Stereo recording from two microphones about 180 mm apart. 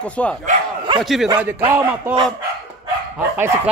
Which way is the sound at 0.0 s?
5° left (ahead or behind).